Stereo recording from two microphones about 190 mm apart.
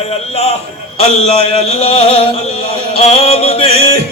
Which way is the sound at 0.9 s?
30° left (ahead or behind).